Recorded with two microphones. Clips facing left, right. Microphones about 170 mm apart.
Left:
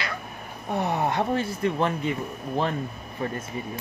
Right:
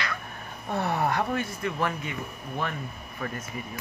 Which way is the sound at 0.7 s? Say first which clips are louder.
Left 1 dB; 15° left (ahead or behind).